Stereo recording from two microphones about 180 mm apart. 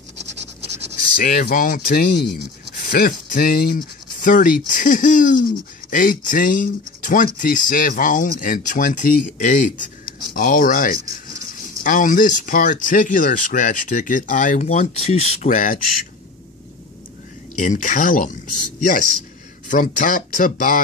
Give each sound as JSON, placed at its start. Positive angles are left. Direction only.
{"t": 1.1, "sound": "speech", "side_deg": 55}
{"t": 17.6, "sound": "speech", "side_deg": 45}